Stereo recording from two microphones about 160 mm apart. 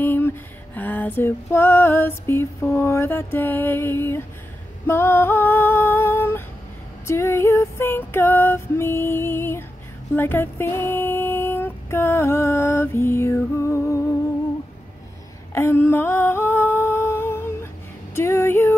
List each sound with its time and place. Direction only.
0.0 s a sound: 15° left (ahead or behind)
0.7 s lullaby: 10° left (ahead or behind)
7.1 s female singing: 15° left (ahead or behind)
15.5 s humming: 15° left (ahead or behind)
18.1 s female singing: 15° left (ahead or behind)